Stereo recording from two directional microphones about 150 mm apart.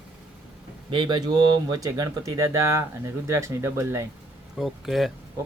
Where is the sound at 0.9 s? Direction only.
30° right (ahead or behind).